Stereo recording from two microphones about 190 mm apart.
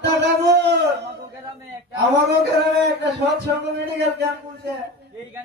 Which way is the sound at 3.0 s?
65° right (ahead or behind).